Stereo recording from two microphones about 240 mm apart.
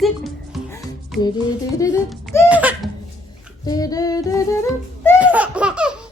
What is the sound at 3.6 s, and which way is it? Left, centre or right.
Female singing, centre.